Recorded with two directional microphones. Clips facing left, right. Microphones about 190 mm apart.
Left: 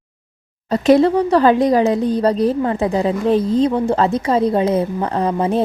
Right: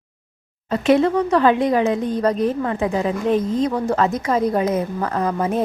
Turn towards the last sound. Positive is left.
turn(degrees=30)  # may be behind; listen again after turning